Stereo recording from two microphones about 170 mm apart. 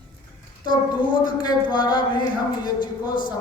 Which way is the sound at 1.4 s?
25° left (ahead or behind).